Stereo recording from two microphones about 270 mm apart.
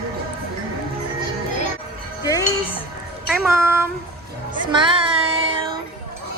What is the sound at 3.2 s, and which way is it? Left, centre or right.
Child singing, centre.